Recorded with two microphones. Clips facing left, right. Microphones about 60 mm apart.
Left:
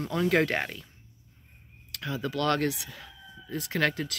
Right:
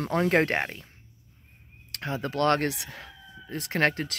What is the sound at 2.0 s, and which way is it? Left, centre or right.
Speech, right.